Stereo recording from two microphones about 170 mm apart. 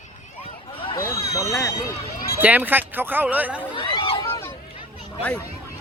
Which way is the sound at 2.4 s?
10° right (ahead or behind).